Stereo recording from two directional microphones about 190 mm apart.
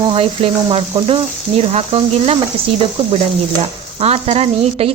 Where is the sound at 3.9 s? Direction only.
30° right (ahead or behind).